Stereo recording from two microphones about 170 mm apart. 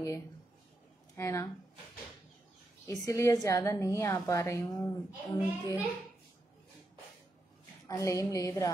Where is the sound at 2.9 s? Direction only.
15° left (ahead or behind).